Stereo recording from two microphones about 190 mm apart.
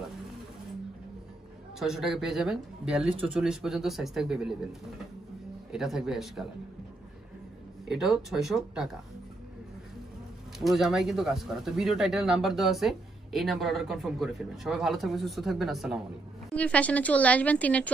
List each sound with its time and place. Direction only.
1.8 s speech: centre (ahead or behind)
5.7 s speech: 5° right (ahead or behind)
7.9 s speech: centre (ahead or behind)
10.6 s a woman's voice: centre (ahead or behind)